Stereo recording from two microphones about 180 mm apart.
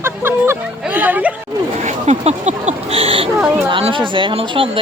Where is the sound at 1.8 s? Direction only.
40° right (ahead or behind).